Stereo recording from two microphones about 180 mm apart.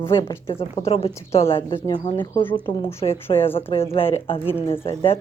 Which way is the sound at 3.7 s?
30° left (ahead or behind).